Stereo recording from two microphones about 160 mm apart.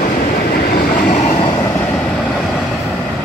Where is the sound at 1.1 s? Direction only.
50° left (ahead or behind).